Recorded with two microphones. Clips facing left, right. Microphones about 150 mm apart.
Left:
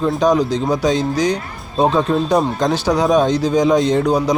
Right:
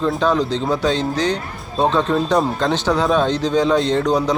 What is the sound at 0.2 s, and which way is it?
Speech, 15° left (ahead or behind).